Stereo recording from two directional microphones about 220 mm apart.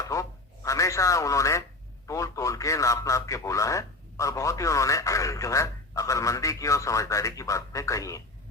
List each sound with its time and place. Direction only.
0.0 s radio: 15° left (ahead or behind)
2.0 s a man's voice: 15° left (ahead or behind)